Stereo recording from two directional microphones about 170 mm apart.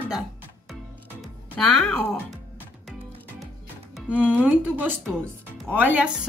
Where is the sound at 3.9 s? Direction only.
5° right (ahead or behind).